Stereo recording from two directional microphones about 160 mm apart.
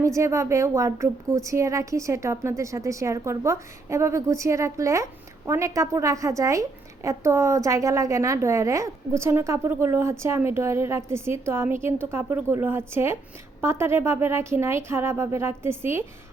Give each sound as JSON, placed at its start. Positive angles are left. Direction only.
{"t": 0.0, "sound": "a woman's voice", "side_deg": -20}